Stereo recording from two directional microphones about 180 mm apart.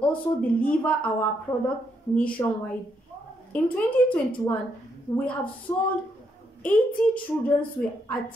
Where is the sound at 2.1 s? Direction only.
10° left (ahead or behind).